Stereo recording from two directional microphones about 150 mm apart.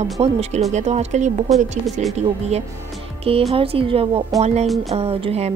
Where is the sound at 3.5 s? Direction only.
40° right (ahead or behind).